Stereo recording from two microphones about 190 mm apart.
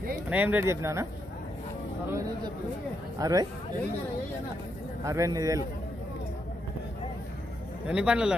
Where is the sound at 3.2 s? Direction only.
20° right (ahead or behind).